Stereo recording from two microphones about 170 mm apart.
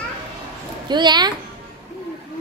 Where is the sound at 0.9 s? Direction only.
25° right (ahead or behind).